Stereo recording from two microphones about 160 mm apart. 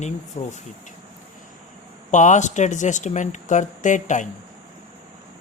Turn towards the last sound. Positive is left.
turn(degrees=50)  # may be behind; listen again after turning